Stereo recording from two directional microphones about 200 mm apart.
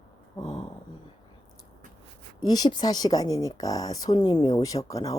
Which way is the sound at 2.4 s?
20° left (ahead or behind).